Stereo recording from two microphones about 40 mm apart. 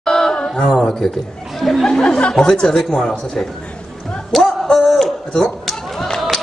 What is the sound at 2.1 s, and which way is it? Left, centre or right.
Speech, left.